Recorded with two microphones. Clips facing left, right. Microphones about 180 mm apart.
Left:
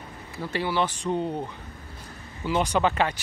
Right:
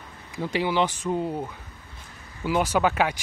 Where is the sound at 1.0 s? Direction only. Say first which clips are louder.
Even; 5° right (ahead or behind).